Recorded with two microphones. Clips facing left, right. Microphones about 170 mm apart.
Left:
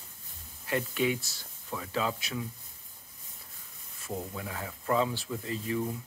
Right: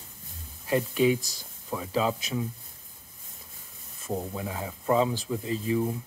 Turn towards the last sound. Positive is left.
turn(degrees=-20)  # may be behind; listen again after turning